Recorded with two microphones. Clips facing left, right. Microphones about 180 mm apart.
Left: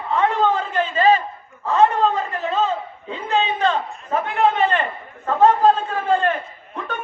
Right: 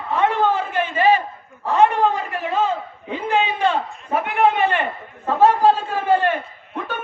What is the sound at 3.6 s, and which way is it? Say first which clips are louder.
A man's voice: even; 10° right (ahead or behind).